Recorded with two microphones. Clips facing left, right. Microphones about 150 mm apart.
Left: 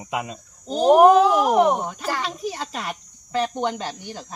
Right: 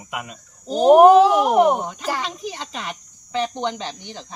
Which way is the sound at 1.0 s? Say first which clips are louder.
Right 2 dB; 25° right (ahead or behind).